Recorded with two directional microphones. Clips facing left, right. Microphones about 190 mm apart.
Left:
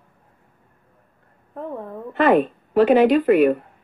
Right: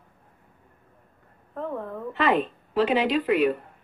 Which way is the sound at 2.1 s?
50° left (ahead or behind).